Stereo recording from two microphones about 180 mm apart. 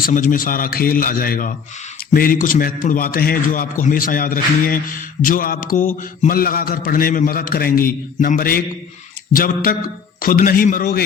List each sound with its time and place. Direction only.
0.0 s a man's voice: 45° left (ahead or behind)